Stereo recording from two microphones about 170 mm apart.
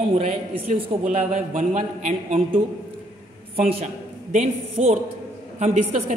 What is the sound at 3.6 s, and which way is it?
A man's voice, 35° right (ahead or behind).